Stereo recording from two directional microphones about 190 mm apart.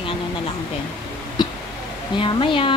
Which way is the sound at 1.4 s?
25° left (ahead or behind).